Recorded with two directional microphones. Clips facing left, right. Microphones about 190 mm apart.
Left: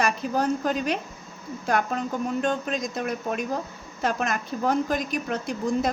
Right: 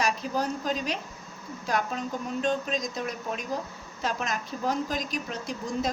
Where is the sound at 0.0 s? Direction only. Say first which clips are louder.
Left 4 dB; 55° left (ahead or behind).